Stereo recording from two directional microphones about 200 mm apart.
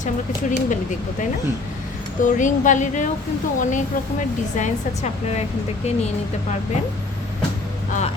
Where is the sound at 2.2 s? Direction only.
40° left (ahead or behind).